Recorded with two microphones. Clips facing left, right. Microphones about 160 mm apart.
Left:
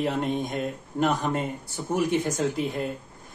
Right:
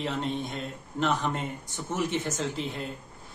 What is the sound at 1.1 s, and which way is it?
A man's voice, 10° left (ahead or behind).